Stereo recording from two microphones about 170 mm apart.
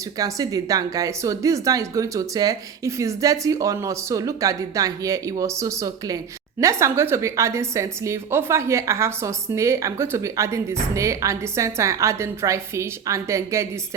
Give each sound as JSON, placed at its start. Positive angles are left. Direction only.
{"t": 0.2, "sound": "a woman's voice", "side_deg": -20}